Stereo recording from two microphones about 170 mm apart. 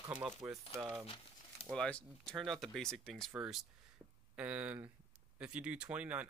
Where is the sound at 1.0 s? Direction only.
30° left (ahead or behind).